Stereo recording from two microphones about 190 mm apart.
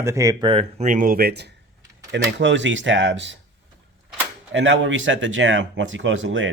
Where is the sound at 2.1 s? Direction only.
70° right (ahead or behind).